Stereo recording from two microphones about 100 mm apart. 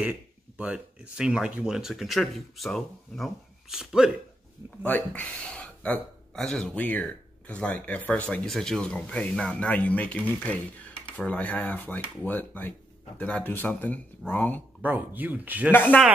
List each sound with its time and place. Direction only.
0.6 s speech: 10° right (ahead or behind)
4.8 s speech: 15° left (ahead or behind)
14.8 s speech: 15° right (ahead or behind)
15.7 s speech: 20° left (ahead or behind)